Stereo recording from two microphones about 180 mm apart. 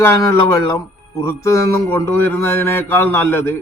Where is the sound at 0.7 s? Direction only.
20° left (ahead or behind).